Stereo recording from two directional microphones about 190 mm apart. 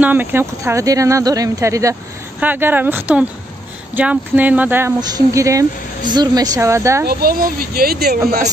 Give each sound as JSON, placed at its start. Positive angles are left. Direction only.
{"t": 0.0, "sound": "speech", "side_deg": -10}
{"t": 7.1, "sound": "speech", "side_deg": -50}